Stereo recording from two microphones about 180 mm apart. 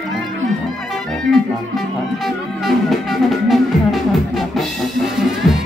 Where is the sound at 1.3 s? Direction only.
Centre (ahead or behind).